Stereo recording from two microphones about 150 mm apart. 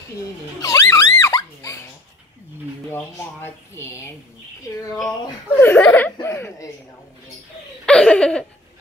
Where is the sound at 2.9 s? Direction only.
15° left (ahead or behind).